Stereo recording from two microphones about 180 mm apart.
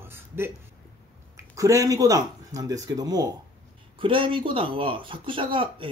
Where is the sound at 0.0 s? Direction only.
15° right (ahead or behind).